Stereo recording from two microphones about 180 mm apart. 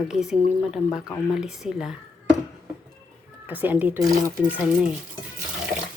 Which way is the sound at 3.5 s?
10° right (ahead or behind).